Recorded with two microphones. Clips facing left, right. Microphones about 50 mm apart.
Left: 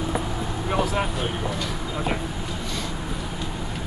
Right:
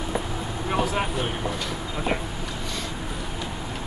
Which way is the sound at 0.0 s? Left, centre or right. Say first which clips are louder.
Left 2 dB; centre.